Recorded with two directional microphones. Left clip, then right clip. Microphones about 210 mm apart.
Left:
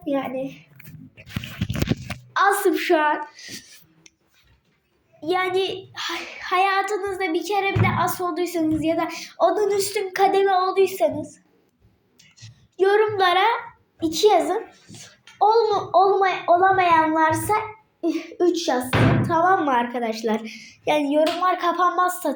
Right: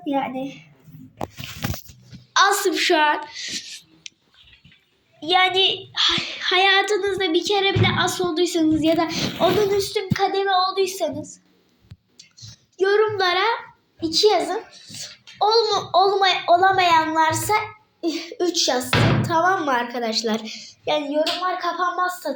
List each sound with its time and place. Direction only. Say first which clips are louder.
0.0 s a woman's voice: right 1 dB; centre (ahead or behind)
2.3 s a child's voice: right 1 dB; 15° left (ahead or behind)
5.2 s a child's voice: right 5 dB; 5° left (ahead or behind)
12.1 s a sound: right 5 dB; 5° left (ahead or behind)
14.0 s a child's voice: even; 15° left (ahead or behind)